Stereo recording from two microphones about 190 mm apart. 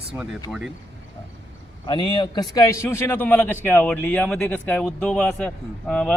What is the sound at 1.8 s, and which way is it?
Speech, 25° left (ahead or behind).